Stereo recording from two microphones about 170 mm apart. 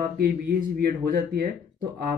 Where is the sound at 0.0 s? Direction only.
65° right (ahead or behind).